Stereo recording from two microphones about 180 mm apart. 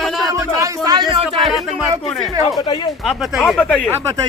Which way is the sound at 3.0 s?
Centre (ahead or behind).